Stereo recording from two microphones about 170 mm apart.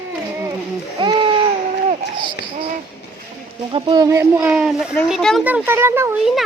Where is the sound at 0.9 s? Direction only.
30° right (ahead or behind).